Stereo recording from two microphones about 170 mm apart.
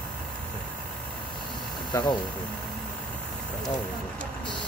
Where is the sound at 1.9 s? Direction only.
25° left (ahead or behind).